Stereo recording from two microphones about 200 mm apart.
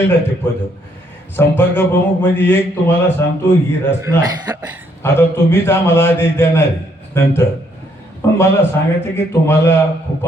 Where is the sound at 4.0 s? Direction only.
20° right (ahead or behind).